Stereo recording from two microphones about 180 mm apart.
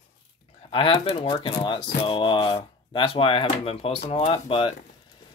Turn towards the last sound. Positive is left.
turn(degrees=30)  # may be behind; listen again after turning